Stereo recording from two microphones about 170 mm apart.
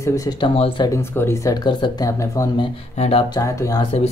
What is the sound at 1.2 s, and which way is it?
Speech, 15° left (ahead or behind).